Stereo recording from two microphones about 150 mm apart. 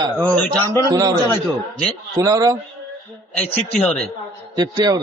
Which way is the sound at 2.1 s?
25° right (ahead or behind).